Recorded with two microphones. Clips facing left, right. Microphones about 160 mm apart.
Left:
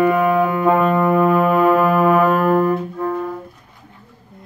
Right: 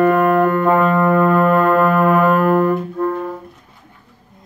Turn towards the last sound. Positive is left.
turn(degrees=-5)  # may be behind; listen again after turning